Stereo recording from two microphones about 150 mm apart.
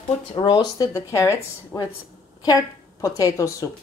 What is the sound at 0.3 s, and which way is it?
Speech, 30° left (ahead or behind).